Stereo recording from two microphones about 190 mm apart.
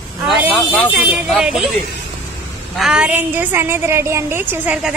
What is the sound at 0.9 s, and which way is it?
Speech, 5° right (ahead or behind).